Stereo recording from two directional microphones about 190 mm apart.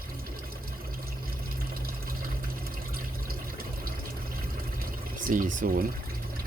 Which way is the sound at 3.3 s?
50° right (ahead or behind).